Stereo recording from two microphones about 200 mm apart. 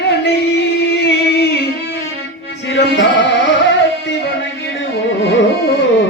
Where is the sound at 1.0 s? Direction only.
55° left (ahead or behind).